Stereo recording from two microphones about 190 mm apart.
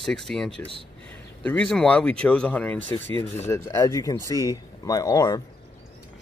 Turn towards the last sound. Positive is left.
turn(degrees=20)  # may be behind; listen again after turning